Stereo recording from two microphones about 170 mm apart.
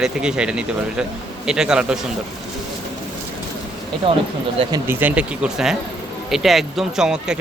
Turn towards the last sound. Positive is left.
turn(degrees=-5)  # may be behind; listen again after turning